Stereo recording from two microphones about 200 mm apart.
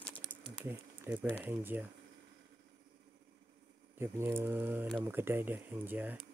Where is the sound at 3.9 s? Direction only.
10° right (ahead or behind).